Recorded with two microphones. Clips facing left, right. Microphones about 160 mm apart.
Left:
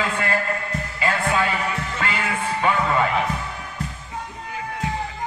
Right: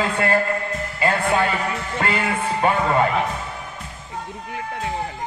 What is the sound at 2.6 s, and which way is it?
Speech, 40° right (ahead or behind).